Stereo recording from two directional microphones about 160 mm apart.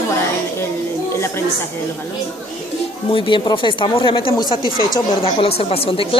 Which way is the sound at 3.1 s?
30° left (ahead or behind).